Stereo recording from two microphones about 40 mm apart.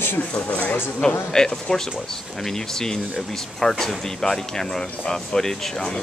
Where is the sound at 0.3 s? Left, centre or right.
Left.